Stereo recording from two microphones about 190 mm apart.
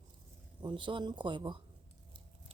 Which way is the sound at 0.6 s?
25° right (ahead or behind).